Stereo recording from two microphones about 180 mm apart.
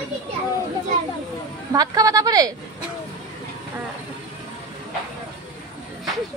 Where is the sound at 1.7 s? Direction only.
20° right (ahead or behind).